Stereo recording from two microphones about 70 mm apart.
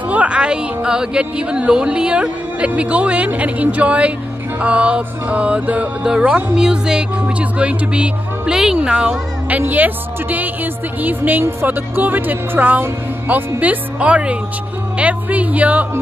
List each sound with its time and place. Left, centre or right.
0.1 s a woman's voice: centre
9.6 s a woman's voice: right